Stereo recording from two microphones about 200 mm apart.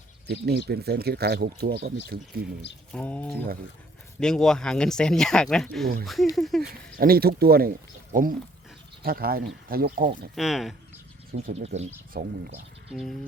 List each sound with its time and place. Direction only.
0.3 s speech: 55° right (ahead or behind)
2.9 s speech: 5° left (ahead or behind)
6.6 s speech: 50° right (ahead or behind)
10.3 s speech: centre (ahead or behind)
11.6 s speech: 30° right (ahead or behind)
12.1 s speech: 50° right (ahead or behind)
12.9 s speech: centre (ahead or behind)